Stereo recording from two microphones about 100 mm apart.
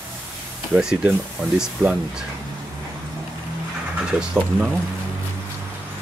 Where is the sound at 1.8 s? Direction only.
30° right (ahead or behind).